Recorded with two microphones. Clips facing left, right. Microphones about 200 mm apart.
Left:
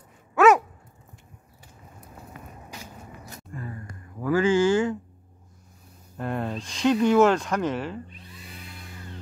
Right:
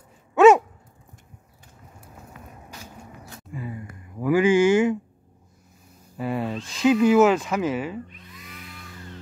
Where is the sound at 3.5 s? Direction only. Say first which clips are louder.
Right 4 dB; 10° right (ahead or behind).